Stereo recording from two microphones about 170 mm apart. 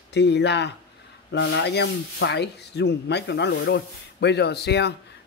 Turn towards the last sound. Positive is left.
turn(degrees=75)  # may be behind; listen again after turning